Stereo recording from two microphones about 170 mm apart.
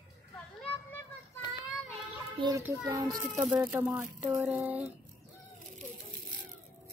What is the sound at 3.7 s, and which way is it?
Speech, 10° right (ahead or behind).